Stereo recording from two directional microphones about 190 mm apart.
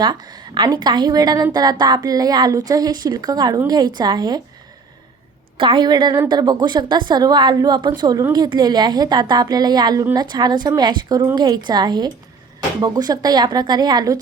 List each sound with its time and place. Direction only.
0.0 s a woman's voice: 20° right (ahead or behind)
5.5 s a woman's voice: 25° right (ahead or behind)